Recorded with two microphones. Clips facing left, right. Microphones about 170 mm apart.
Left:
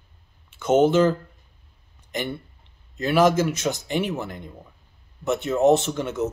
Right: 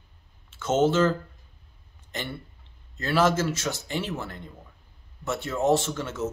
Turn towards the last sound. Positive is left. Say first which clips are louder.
# left 4 dB
turn(degrees=15)  # may be behind; listen again after turning